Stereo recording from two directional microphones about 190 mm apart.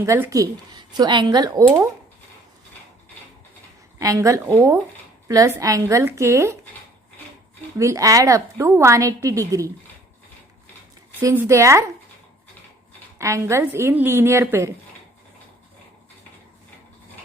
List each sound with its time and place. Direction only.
0.0 s a woman's voice: 15° right (ahead or behind)
3.9 s a woman's voice: 15° right (ahead or behind)
7.8 s a woman's voice: 15° right (ahead or behind)
11.2 s a woman's voice: 15° right (ahead or behind)
13.1 s a woman's voice: 15° right (ahead or behind)